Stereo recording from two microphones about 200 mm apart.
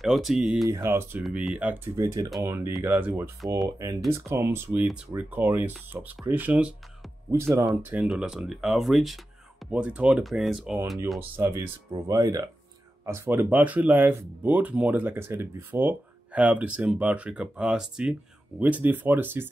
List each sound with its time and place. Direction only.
0.0 s speech: centre (ahead or behind)
0.7 s speech: 15° right (ahead or behind)